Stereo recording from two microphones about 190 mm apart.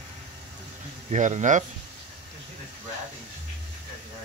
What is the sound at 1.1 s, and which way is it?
Speech, 40° right (ahead or behind).